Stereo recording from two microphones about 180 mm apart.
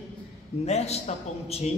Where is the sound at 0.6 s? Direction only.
35° left (ahead or behind).